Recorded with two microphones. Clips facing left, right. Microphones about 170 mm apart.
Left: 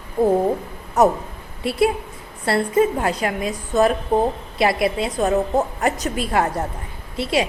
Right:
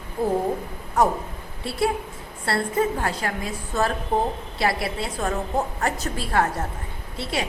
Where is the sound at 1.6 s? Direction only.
20° left (ahead or behind).